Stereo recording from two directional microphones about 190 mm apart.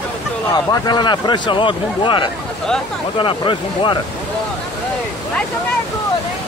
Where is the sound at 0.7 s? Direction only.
20° left (ahead or behind).